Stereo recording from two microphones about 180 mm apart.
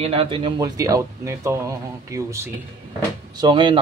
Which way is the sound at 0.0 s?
30° right (ahead or behind).